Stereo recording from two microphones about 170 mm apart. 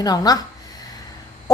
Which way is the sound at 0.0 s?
20° left (ahead or behind).